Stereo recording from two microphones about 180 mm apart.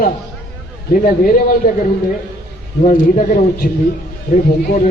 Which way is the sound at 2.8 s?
45° left (ahead or behind).